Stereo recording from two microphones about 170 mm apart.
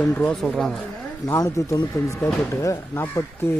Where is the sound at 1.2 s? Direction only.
20° left (ahead or behind).